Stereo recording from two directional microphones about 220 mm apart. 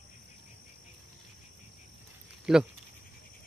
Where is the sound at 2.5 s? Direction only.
5° right (ahead or behind).